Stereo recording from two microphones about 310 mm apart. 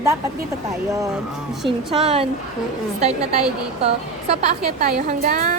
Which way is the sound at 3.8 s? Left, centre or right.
Centre.